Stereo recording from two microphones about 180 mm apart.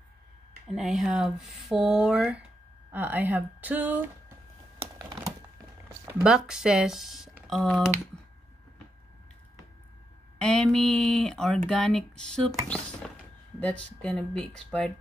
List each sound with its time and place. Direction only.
0.7 s speech: centre (ahead or behind)
4.9 s computer keyboard: 20° right (ahead or behind)
6.2 s speech: 5° right (ahead or behind)
10.4 s speech: 5° left (ahead or behind)
13.6 s speech: 5° left (ahead or behind)